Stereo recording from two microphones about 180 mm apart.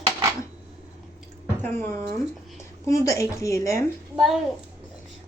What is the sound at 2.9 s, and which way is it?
Speech, 15° left (ahead or behind).